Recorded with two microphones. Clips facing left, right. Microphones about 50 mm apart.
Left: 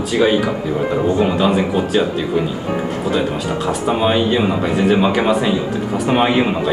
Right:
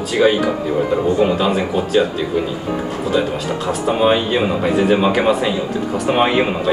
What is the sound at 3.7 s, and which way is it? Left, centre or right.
Speech, centre.